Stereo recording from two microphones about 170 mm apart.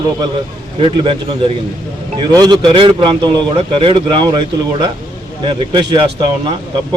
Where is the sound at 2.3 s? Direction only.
25° right (ahead or behind).